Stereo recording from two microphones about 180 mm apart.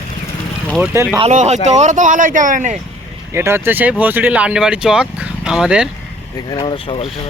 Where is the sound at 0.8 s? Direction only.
15° right (ahead or behind).